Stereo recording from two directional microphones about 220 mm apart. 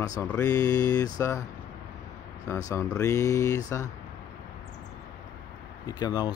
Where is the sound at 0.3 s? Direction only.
15° left (ahead or behind).